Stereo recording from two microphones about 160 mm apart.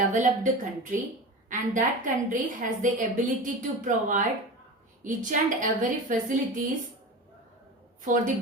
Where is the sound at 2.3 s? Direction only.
55° right (ahead or behind).